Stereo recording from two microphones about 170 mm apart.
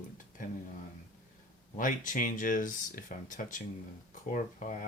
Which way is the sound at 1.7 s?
50° left (ahead or behind).